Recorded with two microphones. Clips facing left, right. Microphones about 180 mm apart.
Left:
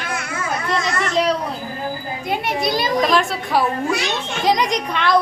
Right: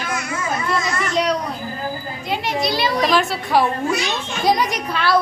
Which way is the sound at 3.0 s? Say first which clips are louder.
Even; centre (ahead or behind).